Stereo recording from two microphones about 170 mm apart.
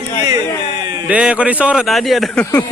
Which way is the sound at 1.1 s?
5° right (ahead or behind).